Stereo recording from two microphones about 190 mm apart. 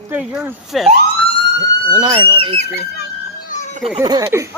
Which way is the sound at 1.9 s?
25° right (ahead or behind).